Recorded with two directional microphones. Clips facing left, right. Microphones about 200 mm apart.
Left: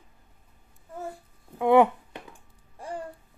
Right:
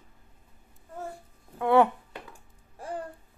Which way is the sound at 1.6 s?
15° left (ahead or behind).